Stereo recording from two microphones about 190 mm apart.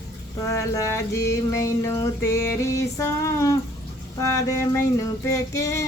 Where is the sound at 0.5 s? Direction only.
15° left (ahead or behind).